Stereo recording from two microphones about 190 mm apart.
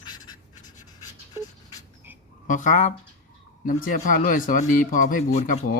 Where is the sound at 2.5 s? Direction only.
40° left (ahead or behind).